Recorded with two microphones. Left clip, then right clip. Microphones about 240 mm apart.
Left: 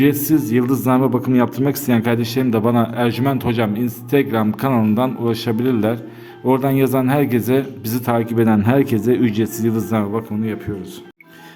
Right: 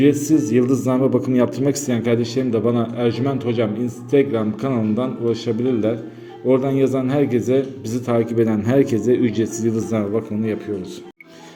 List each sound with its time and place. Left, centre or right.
0.0 s a man's voice: left